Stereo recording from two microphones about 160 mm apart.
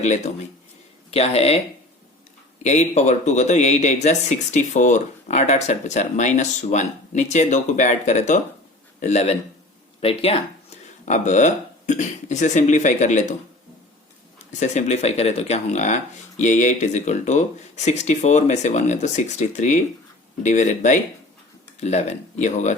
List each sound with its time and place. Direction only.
0.0 s speech: 45° left (ahead or behind)
2.6 s speech: 45° left (ahead or behind)
11.0 s speech: 50° left (ahead or behind)
14.6 s speech: 45° left (ahead or behind)